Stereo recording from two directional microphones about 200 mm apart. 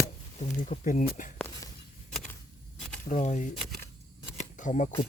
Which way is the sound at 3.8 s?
15° left (ahead or behind).